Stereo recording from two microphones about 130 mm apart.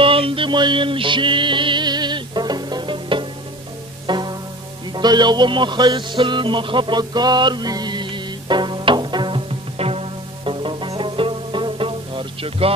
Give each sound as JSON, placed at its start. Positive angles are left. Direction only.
{"t": 0.0, "sound": "music", "side_deg": -45}